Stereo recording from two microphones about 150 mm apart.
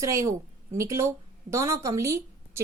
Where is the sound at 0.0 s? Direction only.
20° right (ahead or behind).